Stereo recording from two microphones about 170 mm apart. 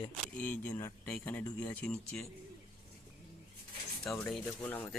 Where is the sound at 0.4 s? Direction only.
10° left (ahead or behind).